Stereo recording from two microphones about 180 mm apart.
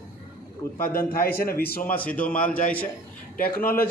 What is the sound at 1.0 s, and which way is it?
Speech, 60° left (ahead or behind).